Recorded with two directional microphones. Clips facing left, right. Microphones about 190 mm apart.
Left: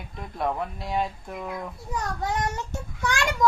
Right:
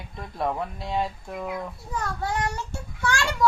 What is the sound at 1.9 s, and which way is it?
Child singing, 20° left (ahead or behind).